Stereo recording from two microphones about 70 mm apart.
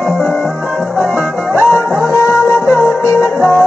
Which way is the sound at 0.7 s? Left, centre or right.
Left.